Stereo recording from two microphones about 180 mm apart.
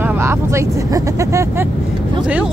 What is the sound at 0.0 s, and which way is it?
Speech, 10° right (ahead or behind).